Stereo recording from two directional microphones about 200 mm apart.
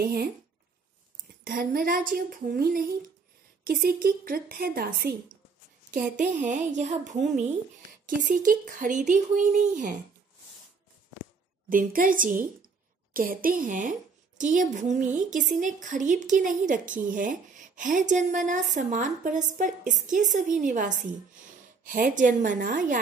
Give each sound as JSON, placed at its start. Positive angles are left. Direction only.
{"t": 0.0, "sound": "speech", "side_deg": -50}
{"t": 1.4, "sound": "a woman's voice", "side_deg": -45}
{"t": 8.2, "sound": "a woman's voice", "side_deg": -40}
{"t": 11.7, "sound": "a woman's voice", "side_deg": -45}